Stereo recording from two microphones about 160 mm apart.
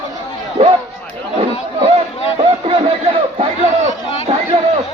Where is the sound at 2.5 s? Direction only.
35° right (ahead or behind).